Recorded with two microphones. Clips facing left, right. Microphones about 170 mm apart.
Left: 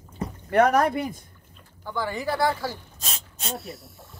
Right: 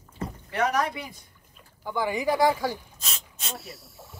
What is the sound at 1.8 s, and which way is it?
Speech, 15° right (ahead or behind).